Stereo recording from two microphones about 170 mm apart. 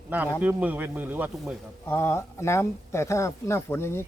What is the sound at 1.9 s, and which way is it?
Speech, 15° left (ahead or behind).